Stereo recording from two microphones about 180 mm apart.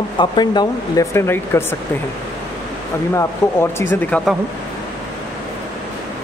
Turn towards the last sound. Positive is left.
turn(degrees=10)  # may be behind; listen again after turning